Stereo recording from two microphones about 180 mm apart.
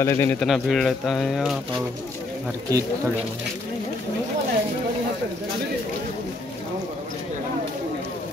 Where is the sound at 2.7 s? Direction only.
20° right (ahead or behind).